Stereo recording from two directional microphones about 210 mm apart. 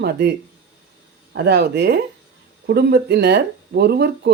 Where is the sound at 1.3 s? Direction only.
50° right (ahead or behind).